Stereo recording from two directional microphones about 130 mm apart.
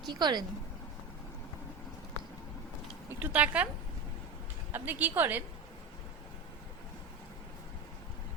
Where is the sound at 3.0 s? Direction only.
15° right (ahead or behind).